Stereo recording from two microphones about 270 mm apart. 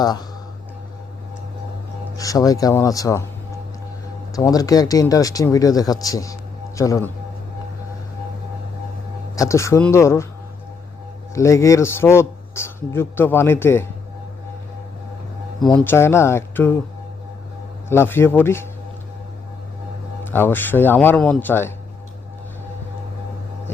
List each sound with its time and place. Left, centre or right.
0.0 s speech: centre
2.1 s speech: centre
4.4 s speech: centre
9.3 s speech: centre
11.3 s speech: centre
15.7 s speech: centre
17.8 s speech: centre
20.2 s speech: centre